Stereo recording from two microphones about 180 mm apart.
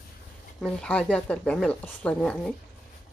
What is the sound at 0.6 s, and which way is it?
Speech, 5° left (ahead or behind).